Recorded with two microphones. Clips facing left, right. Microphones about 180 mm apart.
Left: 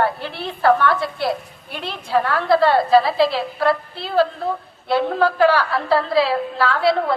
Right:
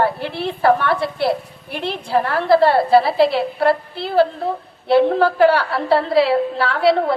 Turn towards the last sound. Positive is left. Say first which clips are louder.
# right 2 dB
turn(degrees=-30)  # may be behind; listen again after turning